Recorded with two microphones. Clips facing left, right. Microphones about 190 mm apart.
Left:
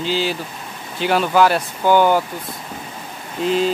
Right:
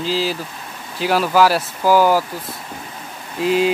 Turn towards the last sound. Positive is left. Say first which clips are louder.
# right 1 dB
turn(degrees=-5)  # may be behind; listen again after turning